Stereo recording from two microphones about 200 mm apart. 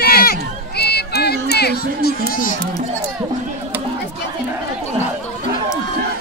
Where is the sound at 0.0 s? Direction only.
50° left (ahead or behind).